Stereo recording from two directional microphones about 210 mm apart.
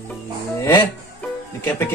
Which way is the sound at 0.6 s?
15° left (ahead or behind).